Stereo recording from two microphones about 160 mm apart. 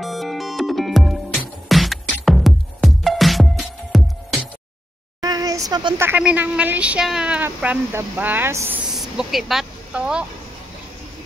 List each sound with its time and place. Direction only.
0.0 s music: centre (ahead or behind)
5.2 s a sound: 20° right (ahead or behind)
5.9 s speech: 10° right (ahead or behind)
8.9 s speech: centre (ahead or behind)